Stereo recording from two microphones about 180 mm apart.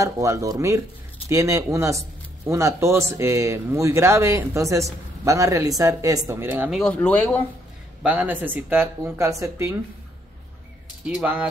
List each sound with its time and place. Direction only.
0.0 s speech: 15° right (ahead or behind)
6.8 s speech: 10° left (ahead or behind)
8.0 s speech: 10° right (ahead or behind)
11.1 s speech: 5° right (ahead or behind)